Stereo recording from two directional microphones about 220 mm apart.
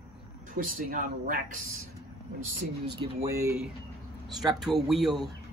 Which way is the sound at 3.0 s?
15° right (ahead or behind).